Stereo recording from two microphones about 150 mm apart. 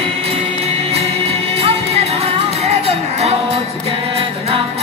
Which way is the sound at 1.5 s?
45° right (ahead or behind).